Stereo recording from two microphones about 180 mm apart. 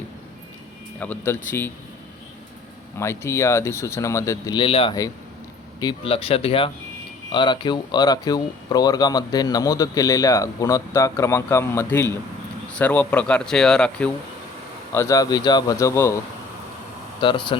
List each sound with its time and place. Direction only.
0.9 s speech: 10° left (ahead or behind)
3.0 s speech: 15° left (ahead or behind)
14.9 s speech: 20° left (ahead or behind)
17.2 s speech: 25° left (ahead or behind)